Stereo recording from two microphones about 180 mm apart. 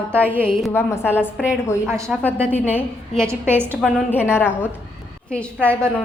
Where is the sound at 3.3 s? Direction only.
10° right (ahead or behind).